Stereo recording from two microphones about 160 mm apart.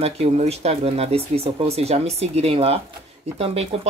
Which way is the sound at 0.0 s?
40° right (ahead or behind).